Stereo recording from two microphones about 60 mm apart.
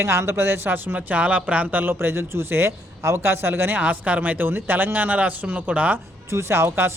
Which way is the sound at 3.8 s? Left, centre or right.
Right.